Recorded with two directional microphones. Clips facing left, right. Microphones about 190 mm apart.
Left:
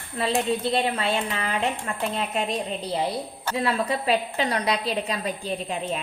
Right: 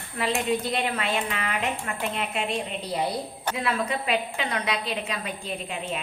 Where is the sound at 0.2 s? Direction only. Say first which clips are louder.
Left 2 dB; 35° left (ahead or behind).